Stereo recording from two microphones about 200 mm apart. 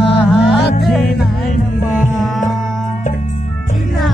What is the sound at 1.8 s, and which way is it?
Music, centre (ahead or behind).